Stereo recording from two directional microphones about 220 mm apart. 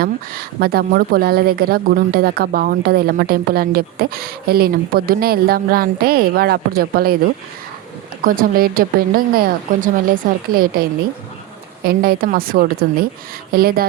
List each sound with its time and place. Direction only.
0.0 s a woman's voice: 45° right (ahead or behind)
8.2 s a woman's voice: 40° right (ahead or behind)
11.9 s a woman's voice: 40° right (ahead or behind)